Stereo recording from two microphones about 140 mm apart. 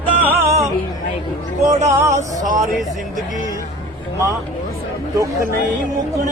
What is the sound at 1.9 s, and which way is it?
Music, 20° right (ahead or behind).